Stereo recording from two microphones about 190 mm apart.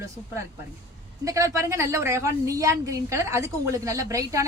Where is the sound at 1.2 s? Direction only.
15° right (ahead or behind).